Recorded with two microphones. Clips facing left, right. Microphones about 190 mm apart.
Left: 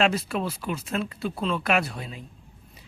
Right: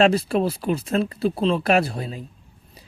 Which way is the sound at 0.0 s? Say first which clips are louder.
Right 6 dB; 35° right (ahead or behind).